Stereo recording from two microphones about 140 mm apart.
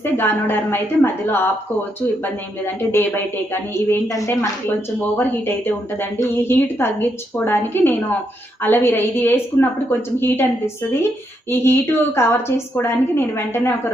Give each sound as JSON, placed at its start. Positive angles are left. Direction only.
{"t": 0.0, "sound": "a woman's voice", "side_deg": 15}
{"t": 2.8, "sound": "a woman's voice", "side_deg": 20}
{"t": 11.4, "sound": "a woman's voice", "side_deg": 15}